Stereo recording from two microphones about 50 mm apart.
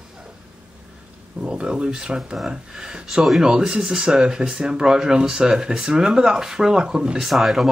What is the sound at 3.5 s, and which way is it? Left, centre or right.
Speech, centre.